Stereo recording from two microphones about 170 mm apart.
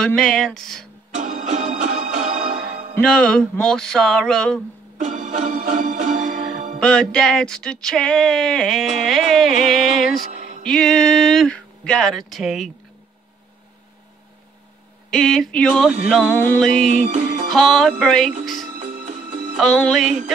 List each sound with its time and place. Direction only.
0.0 s music: 5° left (ahead or behind)
1.1 s music: 45° right (ahead or behind)
3.0 s music: 5° left (ahead or behind)
4.9 s organ: 45° right (ahead or behind)
6.8 s music: 5° left (ahead or behind)
15.0 s music: 5° left (ahead or behind)
16.9 s music: 45° right (ahead or behind)
17.5 s music: centre (ahead or behind)
18.8 s music: 50° right (ahead or behind)
19.5 s music: centre (ahead or behind)